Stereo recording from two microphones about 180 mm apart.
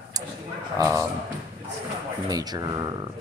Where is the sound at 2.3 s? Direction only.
20° right (ahead or behind).